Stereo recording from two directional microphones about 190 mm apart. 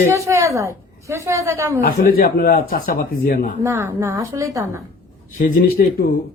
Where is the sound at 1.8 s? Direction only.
50° left (ahead or behind).